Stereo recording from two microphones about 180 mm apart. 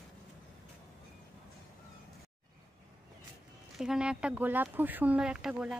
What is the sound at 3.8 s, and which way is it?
Speech, 5° right (ahead or behind).